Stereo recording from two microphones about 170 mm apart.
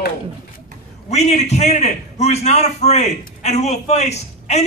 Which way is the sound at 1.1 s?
40° left (ahead or behind).